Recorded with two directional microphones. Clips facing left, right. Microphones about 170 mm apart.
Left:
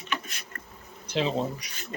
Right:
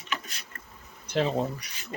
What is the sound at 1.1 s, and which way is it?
Speech, 55° right (ahead or behind).